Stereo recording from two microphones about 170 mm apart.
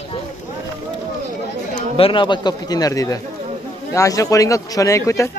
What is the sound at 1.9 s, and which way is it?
Speech, 30° left (ahead or behind).